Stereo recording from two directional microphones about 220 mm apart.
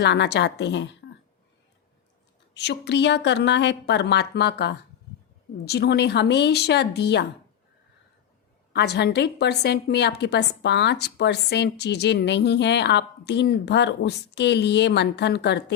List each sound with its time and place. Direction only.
0.0 s a woman's voice: 50° left (ahead or behind)
2.6 s a woman's voice: 50° left (ahead or behind)
8.7 s a woman's voice: 50° left (ahead or behind)